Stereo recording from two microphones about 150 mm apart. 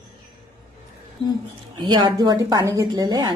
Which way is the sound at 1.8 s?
30° right (ahead or behind).